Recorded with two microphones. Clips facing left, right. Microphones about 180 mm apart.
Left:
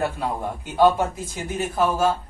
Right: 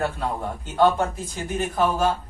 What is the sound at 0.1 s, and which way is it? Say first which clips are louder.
A man's voice: left 1 dB; 10° left (ahead or behind).